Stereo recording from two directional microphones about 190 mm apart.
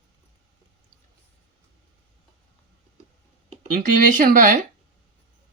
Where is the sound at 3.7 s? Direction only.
45° right (ahead or behind).